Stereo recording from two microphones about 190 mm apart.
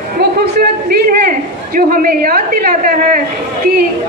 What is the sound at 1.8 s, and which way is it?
A woman's voice, 50° right (ahead or behind).